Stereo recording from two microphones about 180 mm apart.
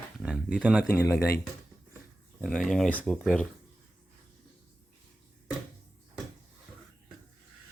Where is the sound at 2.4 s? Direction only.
Centre (ahead or behind).